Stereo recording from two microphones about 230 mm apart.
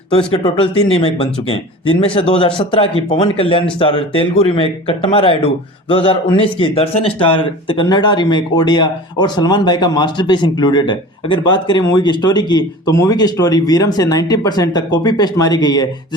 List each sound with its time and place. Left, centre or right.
0.1 s a man's voice: left